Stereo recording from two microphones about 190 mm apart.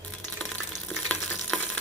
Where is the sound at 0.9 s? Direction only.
5° left (ahead or behind).